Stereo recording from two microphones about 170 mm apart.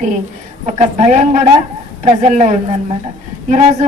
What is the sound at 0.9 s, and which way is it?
A woman's voice, 40° right (ahead or behind).